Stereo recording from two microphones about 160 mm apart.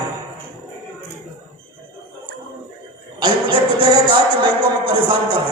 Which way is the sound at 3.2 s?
30° right (ahead or behind).